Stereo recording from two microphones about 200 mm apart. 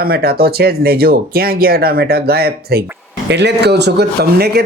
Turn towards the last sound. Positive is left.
turn(degrees=-55)  # may be behind; listen again after turning